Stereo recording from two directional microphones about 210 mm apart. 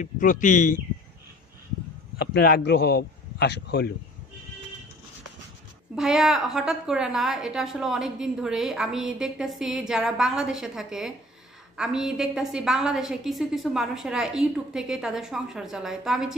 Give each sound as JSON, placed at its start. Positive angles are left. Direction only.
{"t": 0.0, "sound": "speech", "side_deg": 40}
{"t": 2.3, "sound": "speech", "side_deg": 50}
{"t": 5.9, "sound": "a woman's voice", "side_deg": 0}